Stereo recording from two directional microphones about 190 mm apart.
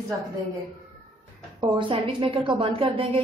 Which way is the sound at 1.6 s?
25° right (ahead or behind).